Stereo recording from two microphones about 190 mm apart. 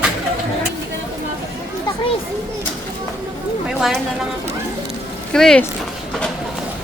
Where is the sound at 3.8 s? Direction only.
5° right (ahead or behind).